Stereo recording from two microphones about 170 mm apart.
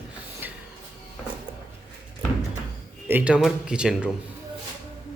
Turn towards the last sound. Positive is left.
turn(degrees=-5)  # may be behind; listen again after turning